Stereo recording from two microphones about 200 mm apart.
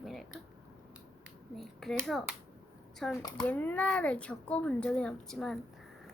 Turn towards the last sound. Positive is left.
turn(degrees=0)  # may be behind; listen again after turning